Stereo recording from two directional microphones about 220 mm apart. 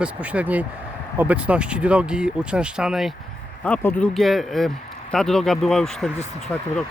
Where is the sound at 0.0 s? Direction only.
5° right (ahead or behind).